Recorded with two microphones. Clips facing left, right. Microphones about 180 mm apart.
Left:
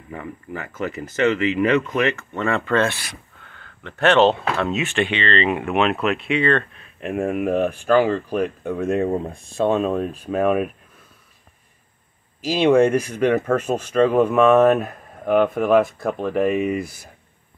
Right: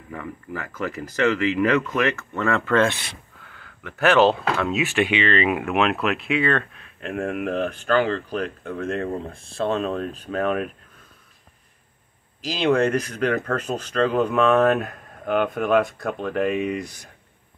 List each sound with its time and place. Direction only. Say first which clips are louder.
0.1 s speech: left 1 dB; 25° left (ahead or behind)
0.7 s speech: left 2 dB; centre (ahead or behind)
2.8 s speech: right 1 dB; 20° right (ahead or behind)
3.8 s speech: left 1 dB; 5° right (ahead or behind)
12.4 s speech: left 5 dB; 10° left (ahead or behind)